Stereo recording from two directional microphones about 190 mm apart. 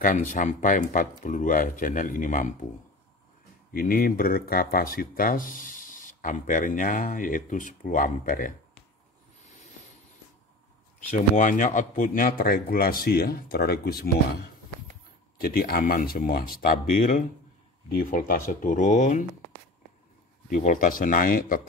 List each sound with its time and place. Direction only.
0.0 s speech: 40° left (ahead or behind)
3.7 s speech: 50° left (ahead or behind)
11.3 s speech: 45° left (ahead or behind)
15.4 s speech: 50° left (ahead or behind)
20.4 s speech: 45° left (ahead or behind)